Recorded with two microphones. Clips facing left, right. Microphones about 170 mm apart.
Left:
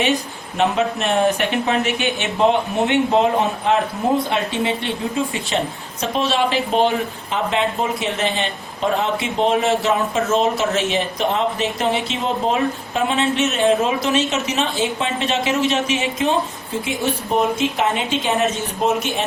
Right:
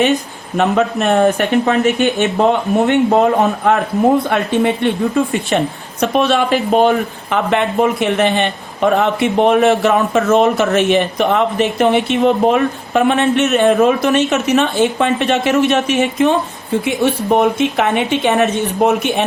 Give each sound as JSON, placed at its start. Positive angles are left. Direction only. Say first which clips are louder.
{"t": 0.5, "sound": "a man's voice", "louder": "right 4 dB", "side_deg": -50}